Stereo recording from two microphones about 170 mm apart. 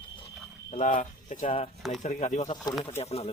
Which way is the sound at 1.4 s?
35° left (ahead or behind).